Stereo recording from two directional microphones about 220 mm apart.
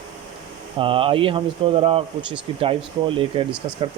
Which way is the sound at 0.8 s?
25° right (ahead or behind).